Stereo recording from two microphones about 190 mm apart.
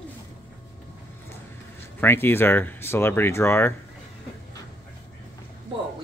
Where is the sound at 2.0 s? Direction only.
10° left (ahead or behind).